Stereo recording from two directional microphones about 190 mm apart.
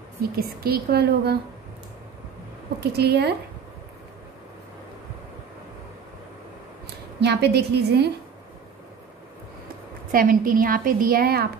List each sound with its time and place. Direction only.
0.2 s a woman's voice: 55° right (ahead or behind)
2.8 s a woman's voice: 60° right (ahead or behind)
7.2 s a woman's voice: 60° right (ahead or behind)
10.1 s a woman's voice: 45° right (ahead or behind)